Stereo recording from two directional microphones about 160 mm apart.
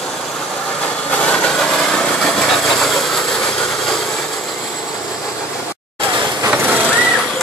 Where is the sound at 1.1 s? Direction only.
5° left (ahead or behind).